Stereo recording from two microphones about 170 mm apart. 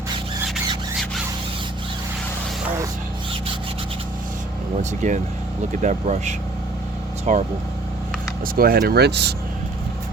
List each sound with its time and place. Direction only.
4.8 s speech: 45° right (ahead or behind)
8.5 s speech: 60° right (ahead or behind); by 9.3 s 75° right (ahead or behind)